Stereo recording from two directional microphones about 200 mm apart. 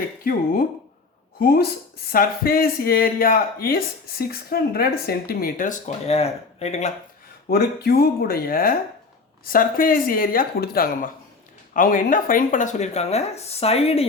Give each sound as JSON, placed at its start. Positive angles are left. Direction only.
{"t": 1.4, "sound": "speech", "side_deg": 50}
{"t": 7.5, "sound": "speech", "side_deg": 50}